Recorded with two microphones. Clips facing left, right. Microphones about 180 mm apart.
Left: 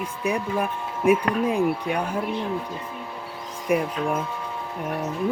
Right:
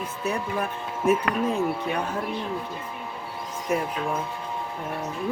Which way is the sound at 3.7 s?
15° left (ahead or behind).